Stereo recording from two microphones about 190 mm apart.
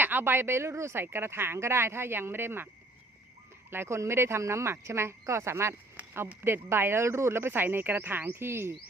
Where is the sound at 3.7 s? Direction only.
15° right (ahead or behind).